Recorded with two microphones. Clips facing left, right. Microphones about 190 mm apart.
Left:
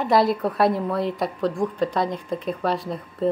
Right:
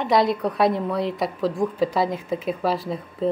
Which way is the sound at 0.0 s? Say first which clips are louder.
Left 1 dB; centre (ahead or behind).